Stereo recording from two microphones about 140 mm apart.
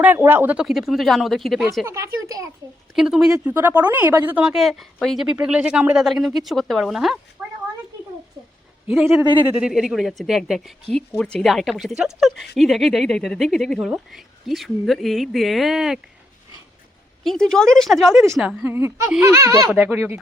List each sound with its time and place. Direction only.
0.0 s speech: 15° right (ahead or behind)
1.8 s speech: 20° right (ahead or behind)
2.9 s speech: 5° right (ahead or behind)
3.3 s speech: 15° right (ahead or behind)
7.4 s a sound: 5° right (ahead or behind)
9.5 s speech: 5° right (ahead or behind)
17.2 s speech: 5° left (ahead or behind); by 20.1 s 15° right (ahead or behind)